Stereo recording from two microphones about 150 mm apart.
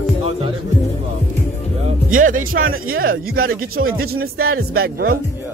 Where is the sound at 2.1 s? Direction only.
65° right (ahead or behind); by 5.2 s 90° right.